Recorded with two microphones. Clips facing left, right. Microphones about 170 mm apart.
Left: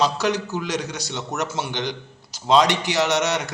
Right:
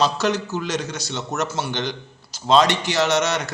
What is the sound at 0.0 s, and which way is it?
A man's voice, 15° left (ahead or behind).